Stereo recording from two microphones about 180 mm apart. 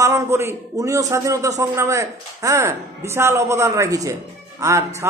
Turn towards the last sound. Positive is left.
turn(degrees=-15)  # may be behind; listen again after turning